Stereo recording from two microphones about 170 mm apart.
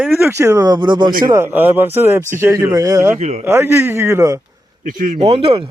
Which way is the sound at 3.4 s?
15° right (ahead or behind).